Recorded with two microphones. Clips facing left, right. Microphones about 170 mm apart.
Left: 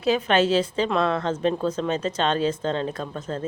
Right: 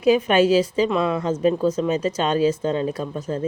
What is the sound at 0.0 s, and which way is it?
A woman's voice, 10° right (ahead or behind).